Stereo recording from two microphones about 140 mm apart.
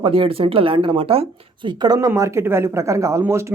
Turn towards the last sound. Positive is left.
turn(degrees=-20)  # may be behind; listen again after turning